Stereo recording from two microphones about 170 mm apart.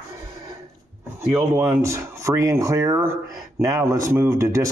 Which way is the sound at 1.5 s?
15° right (ahead or behind).